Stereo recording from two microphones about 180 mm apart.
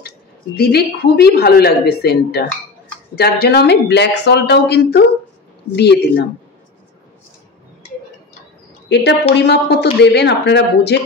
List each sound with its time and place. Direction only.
0.6 s a woman's voice: 60° left (ahead or behind)
8.8 s speech: 70° left (ahead or behind)